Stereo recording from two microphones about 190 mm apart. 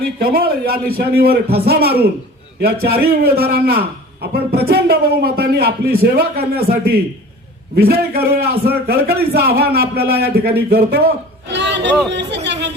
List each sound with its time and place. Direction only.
0.2 s a man's voice: 55° right (ahead or behind)
11.4 s a sound: 65° right (ahead or behind)
12.1 s speech: 65° right (ahead or behind)